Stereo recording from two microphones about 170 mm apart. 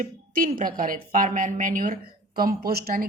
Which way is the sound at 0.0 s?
55° right (ahead or behind).